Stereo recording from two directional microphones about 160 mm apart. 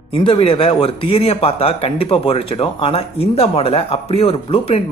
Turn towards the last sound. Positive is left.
turn(degrees=35)  # may be behind; listen again after turning